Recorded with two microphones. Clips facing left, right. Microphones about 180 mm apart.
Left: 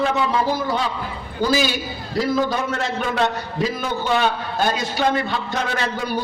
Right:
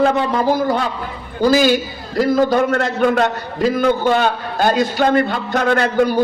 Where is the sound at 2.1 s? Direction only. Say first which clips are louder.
Right 6 dB; 55° right (ahead or behind).